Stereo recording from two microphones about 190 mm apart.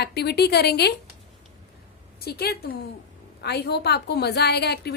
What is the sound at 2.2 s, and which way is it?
A woman's voice, 55° left (ahead or behind).